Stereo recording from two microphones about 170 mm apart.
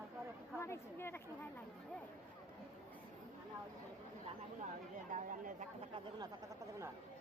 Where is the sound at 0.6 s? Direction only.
15° left (ahead or behind).